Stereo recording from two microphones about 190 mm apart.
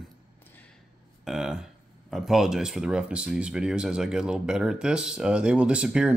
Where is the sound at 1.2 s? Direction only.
Centre (ahead or behind).